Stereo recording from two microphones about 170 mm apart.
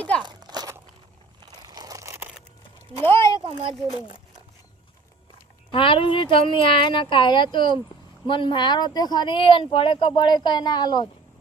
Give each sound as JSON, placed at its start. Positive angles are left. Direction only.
{"t": 0.2, "sound": "crunch", "side_deg": -25}
{"t": 1.4, "sound": "crumpling", "side_deg": -25}
{"t": 3.0, "sound": "a sound", "side_deg": 15}
{"t": 3.4, "sound": "speech", "side_deg": -30}
{"t": 5.7, "sound": "speech", "side_deg": 30}